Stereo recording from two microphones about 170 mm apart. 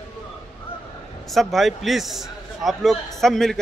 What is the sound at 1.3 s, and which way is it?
A man's voice, centre (ahead or behind).